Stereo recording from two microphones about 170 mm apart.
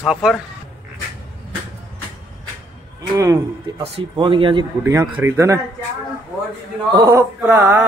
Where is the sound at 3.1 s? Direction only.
15° right (ahead or behind).